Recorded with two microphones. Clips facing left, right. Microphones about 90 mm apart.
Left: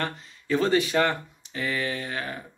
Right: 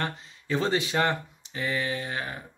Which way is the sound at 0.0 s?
20° right (ahead or behind).